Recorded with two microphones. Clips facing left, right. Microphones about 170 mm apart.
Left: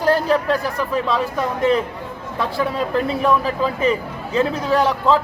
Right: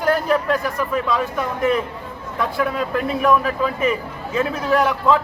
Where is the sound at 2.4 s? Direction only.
30° left (ahead or behind).